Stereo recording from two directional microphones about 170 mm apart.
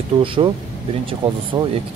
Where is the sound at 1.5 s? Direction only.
30° right (ahead or behind).